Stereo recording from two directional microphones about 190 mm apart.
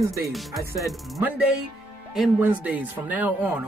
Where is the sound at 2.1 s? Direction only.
5° right (ahead or behind).